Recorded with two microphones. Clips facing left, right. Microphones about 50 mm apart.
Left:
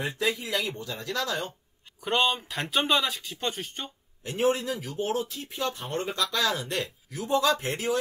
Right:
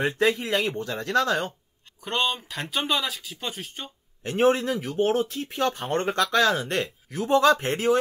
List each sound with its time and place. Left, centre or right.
0.0 s speech: right
2.0 s speech: centre
4.2 s speech: right